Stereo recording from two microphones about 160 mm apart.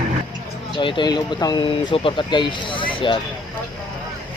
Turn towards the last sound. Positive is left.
turn(degrees=30)  # may be behind; listen again after turning